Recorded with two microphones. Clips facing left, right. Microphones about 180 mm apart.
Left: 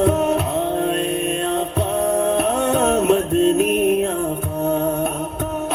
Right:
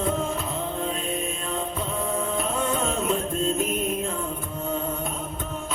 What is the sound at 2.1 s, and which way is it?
Music, 70° left (ahead or behind).